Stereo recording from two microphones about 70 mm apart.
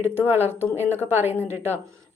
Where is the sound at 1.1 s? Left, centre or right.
Right.